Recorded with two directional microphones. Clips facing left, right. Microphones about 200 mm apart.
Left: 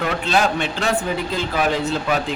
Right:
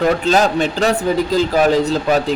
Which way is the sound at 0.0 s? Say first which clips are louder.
Right 6 dB; 40° right (ahead or behind).